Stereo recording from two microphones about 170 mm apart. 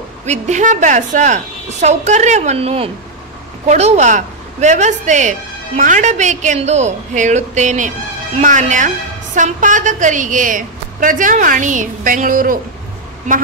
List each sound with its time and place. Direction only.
0.2 s a woman's voice: 45° right (ahead or behind)